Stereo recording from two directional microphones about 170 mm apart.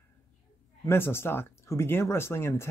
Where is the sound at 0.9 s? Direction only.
15° left (ahead or behind).